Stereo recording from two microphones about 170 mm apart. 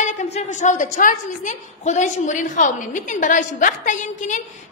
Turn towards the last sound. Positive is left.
turn(degrees=50)  # may be behind; listen again after turning